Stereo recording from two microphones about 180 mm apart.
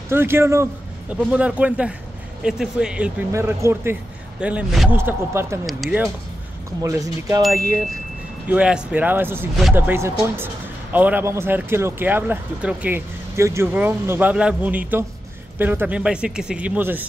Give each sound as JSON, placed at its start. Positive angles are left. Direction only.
{"t": 0.1, "sound": "speech", "side_deg": -15}
{"t": 3.3, "sound": "speech", "side_deg": -15}
{"t": 4.9, "sound": "speech", "side_deg": -15}
{"t": 6.8, "sound": "speech", "side_deg": -15}
{"t": 8.5, "sound": "speech", "side_deg": -5}